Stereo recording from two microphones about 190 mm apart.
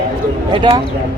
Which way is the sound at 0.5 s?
25° right (ahead or behind).